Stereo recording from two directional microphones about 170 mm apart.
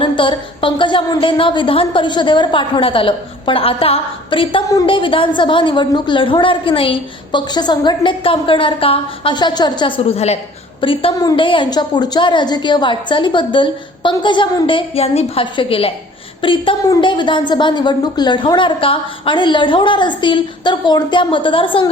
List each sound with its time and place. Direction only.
0.0 s a woman's voice: 30° left (ahead or behind)